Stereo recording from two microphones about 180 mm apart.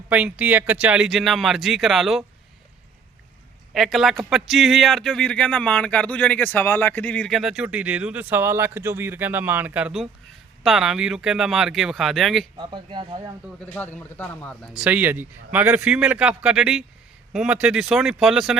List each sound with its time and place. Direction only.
0.1 s speech: 5° right (ahead or behind)
3.8 s speech: centre (ahead or behind)
12.5 s speech: 25° right (ahead or behind)
13.7 s speech: 10° left (ahead or behind)